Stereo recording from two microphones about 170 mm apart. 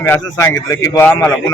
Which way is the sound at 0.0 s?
15° left (ahead or behind).